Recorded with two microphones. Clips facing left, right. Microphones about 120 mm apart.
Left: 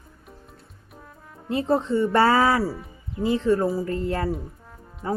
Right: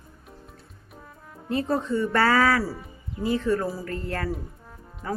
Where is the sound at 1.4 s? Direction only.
20° left (ahead or behind).